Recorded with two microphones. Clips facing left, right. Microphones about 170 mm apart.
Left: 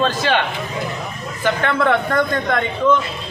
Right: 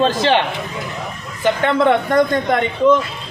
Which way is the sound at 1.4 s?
20° right (ahead or behind).